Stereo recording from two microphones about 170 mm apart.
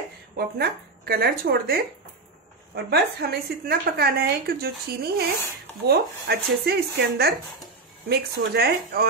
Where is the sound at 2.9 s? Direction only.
70° right (ahead or behind).